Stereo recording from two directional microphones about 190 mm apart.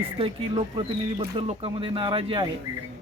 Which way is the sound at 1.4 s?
30° right (ahead or behind).